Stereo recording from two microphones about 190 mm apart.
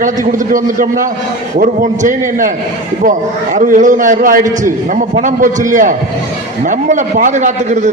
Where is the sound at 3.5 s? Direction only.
40° right (ahead or behind).